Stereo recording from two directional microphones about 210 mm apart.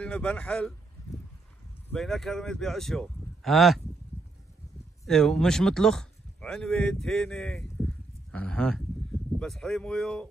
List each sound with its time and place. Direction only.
0.0 s speech: 5° left (ahead or behind)
1.9 s speech: centre (ahead or behind)
5.0 s speech: centre (ahead or behind)